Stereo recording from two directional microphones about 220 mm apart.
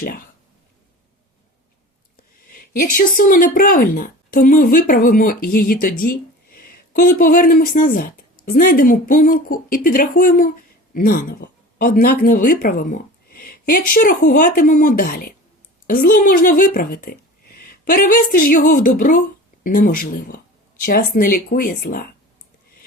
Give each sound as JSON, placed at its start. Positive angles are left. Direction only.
{"t": 2.5, "sound": "speech", "side_deg": 40}